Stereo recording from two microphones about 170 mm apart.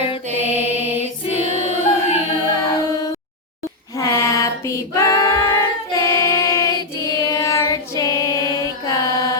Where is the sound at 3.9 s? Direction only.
15° left (ahead or behind).